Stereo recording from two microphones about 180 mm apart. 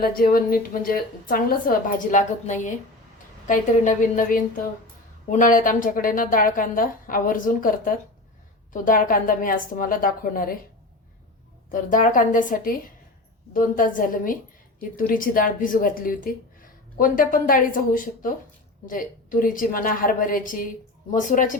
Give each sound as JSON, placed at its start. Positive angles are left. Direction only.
{"t": 0.0, "sound": "a woman's voice", "side_deg": 50}
{"t": 11.7, "sound": "a woman's voice", "side_deg": 50}